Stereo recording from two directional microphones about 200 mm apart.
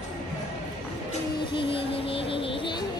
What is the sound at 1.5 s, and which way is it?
Music, 25° left (ahead or behind).